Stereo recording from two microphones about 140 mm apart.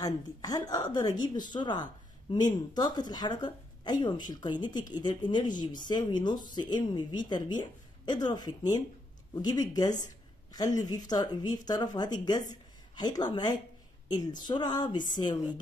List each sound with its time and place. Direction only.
0.0 s a woman's voice: 25° left (ahead or behind)